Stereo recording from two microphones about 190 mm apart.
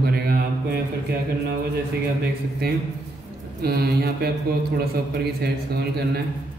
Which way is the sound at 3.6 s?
55° right (ahead or behind).